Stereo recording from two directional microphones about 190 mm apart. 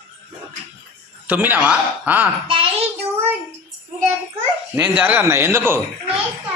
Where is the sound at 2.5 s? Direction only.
30° right (ahead or behind).